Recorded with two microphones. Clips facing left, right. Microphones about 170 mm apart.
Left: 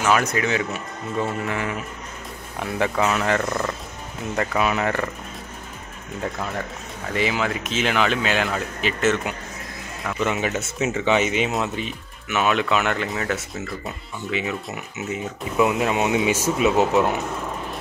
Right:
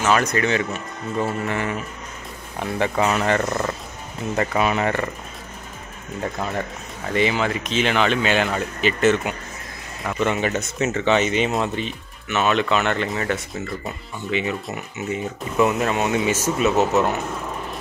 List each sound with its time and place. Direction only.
0.0 s speech: 5° left (ahead or behind)
3.4 s speech: 20° right (ahead or behind)
4.4 s speech: centre (ahead or behind)
7.2 s speech: 5° left (ahead or behind)